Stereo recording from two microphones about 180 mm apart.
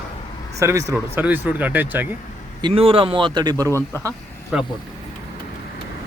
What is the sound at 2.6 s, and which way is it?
Speech, 30° right (ahead or behind).